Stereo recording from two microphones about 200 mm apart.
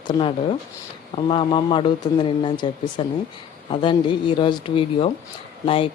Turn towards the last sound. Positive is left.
turn(degrees=30)  # may be behind; listen again after turning